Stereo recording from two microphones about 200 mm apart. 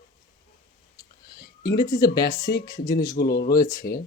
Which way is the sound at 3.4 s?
15° left (ahead or behind).